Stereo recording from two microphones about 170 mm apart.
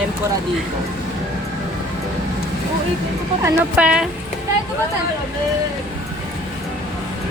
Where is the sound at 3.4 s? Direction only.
5° right (ahead or behind).